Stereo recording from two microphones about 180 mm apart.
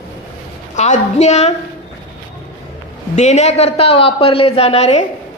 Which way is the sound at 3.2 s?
40° left (ahead or behind).